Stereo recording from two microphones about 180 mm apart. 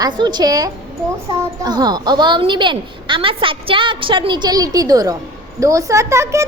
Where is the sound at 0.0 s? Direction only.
25° right (ahead or behind).